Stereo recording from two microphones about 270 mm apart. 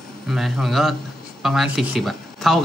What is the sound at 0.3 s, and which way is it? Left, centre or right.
Speech, centre.